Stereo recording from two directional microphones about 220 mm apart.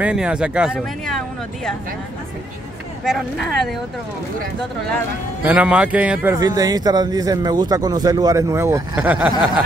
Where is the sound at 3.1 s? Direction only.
Centre (ahead or behind).